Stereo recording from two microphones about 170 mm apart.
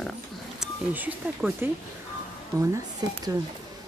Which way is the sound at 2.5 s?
20° right (ahead or behind).